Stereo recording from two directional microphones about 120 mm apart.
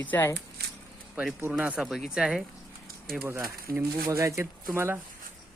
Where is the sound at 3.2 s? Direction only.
20° right (ahead or behind).